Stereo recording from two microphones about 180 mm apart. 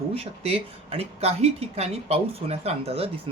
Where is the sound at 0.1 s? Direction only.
30° right (ahead or behind).